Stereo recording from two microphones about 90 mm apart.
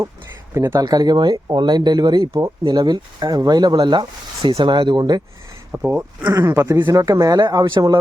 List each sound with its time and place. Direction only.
0.5 s speech: 30° right (ahead or behind)
0.8 s speech: 45° right (ahead or behind)
5.9 s speech: 30° right (ahead or behind)
6.9 s speech: 40° right (ahead or behind)
7.4 s speech: 55° right (ahead or behind)